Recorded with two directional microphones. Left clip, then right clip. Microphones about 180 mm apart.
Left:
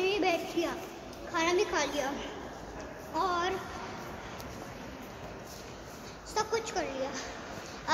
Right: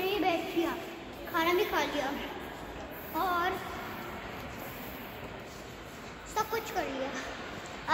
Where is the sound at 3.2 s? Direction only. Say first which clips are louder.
Even; 35° left (ahead or behind).